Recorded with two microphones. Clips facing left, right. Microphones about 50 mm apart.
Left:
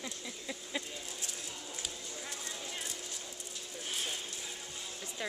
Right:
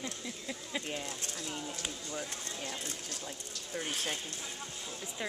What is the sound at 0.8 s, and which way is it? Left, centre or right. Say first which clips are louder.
Speech: right 5 dB; right.